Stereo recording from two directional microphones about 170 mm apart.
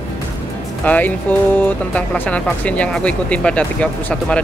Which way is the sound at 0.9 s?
10° left (ahead or behind).